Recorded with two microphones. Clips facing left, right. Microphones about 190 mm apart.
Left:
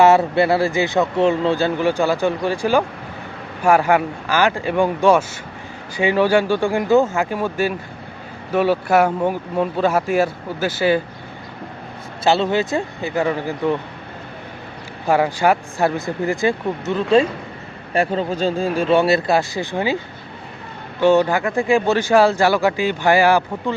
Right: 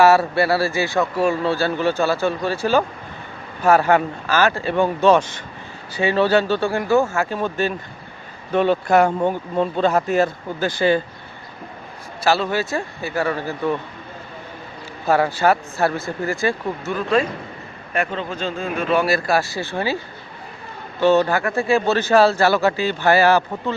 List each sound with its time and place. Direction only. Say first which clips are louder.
0.0 s speech: left 1 dB; 20° left (ahead or behind)
12.2 s speech: left 2 dB; 25° left (ahead or behind)
15.0 s speech: left 1 dB; 15° left (ahead or behind)
21.0 s speech: left 1 dB; 15° left (ahead or behind)